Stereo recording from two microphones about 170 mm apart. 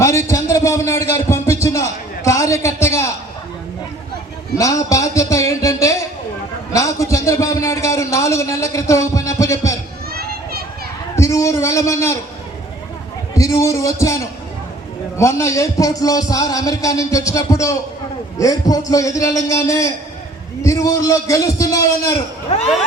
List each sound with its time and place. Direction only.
0.0 s a sound: 15° left (ahead or behind)
4.5 s a man's voice: 20° left (ahead or behind)
6.7 s a sound: 20° left (ahead or behind)
10.1 s children playing: 65° right (ahead or behind)
11.1 s a man's voice: 15° left (ahead or behind)
13.3 s a man's voice: 20° left (ahead or behind)
22.4 s speech: 40° left (ahead or behind)